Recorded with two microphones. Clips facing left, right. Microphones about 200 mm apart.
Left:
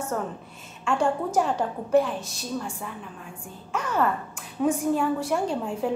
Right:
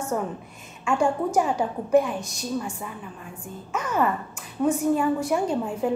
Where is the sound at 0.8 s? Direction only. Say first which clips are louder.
Right 2 dB; 10° right (ahead or behind).